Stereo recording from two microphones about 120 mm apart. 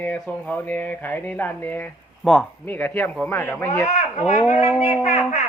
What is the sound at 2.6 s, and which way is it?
Speech, 15° left (ahead or behind).